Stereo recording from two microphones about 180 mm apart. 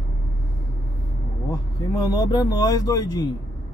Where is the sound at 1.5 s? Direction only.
20° left (ahead or behind).